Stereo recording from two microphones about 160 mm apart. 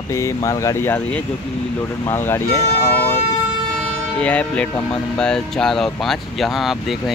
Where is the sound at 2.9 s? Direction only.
10° left (ahead or behind).